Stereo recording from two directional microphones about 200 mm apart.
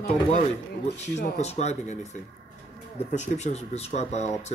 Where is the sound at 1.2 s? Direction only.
35° left (ahead or behind).